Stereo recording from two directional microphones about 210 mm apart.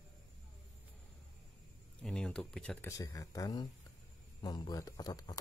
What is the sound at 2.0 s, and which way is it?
Speech, 5° left (ahead or behind).